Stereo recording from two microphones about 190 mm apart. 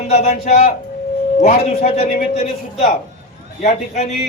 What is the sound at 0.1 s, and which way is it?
A man's voice, 35° left (ahead or behind).